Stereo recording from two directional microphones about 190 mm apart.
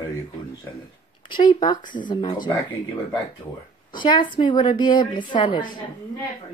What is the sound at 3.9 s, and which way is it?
Speech, 25° left (ahead or behind).